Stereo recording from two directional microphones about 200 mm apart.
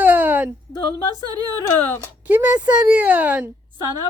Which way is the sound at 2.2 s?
10° right (ahead or behind).